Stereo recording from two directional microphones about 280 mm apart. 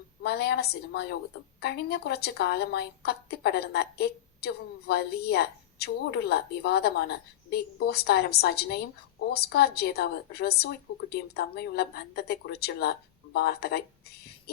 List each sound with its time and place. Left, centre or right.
0.2 s a woman's voice: left